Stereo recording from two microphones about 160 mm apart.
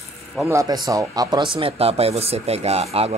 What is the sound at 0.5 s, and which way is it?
Speech, 20° right (ahead or behind).